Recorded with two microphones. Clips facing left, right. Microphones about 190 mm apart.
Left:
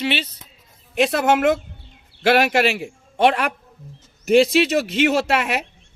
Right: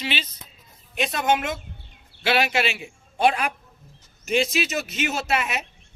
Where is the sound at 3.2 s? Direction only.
70° left (ahead or behind).